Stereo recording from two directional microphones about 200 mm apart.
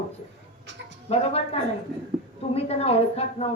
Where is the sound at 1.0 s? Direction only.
30° left (ahead or behind).